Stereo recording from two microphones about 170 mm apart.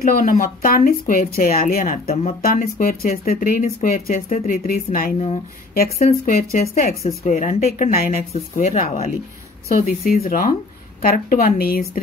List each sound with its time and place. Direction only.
0.0 s speech: 55° left (ahead or behind)
8.3 s speech: 45° left (ahead or behind); by 12.0 s 60° left (ahead or behind)